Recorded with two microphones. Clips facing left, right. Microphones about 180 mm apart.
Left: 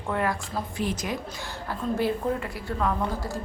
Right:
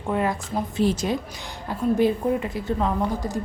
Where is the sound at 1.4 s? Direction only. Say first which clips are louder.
Right 5 dB; 15° right (ahead or behind).